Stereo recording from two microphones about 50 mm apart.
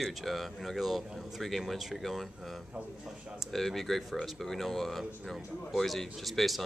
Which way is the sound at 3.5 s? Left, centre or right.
Centre.